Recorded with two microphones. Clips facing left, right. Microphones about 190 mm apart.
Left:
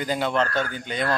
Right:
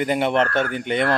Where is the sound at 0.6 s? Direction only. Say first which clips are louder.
Right 6 dB; 70° right (ahead or behind).